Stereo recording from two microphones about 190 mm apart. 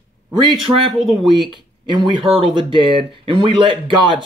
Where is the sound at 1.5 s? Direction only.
25° right (ahead or behind).